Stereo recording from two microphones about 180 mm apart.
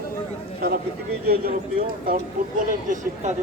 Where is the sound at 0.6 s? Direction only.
60° right (ahead or behind).